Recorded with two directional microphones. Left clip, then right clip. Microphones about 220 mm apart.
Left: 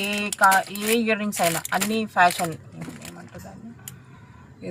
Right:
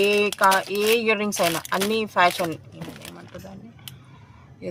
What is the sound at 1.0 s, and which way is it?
Speech, 50° right (ahead or behind).